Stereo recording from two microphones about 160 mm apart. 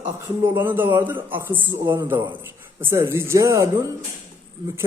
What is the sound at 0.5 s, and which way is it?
A man's voice, 15° right (ahead or behind).